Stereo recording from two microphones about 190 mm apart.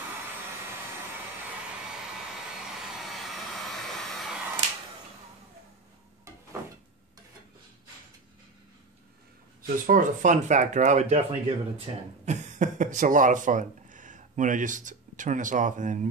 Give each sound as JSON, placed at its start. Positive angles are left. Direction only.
{"t": 3.1, "sound": "vacuum cleaner", "side_deg": 0}
{"t": 9.6, "sound": "speech", "side_deg": -45}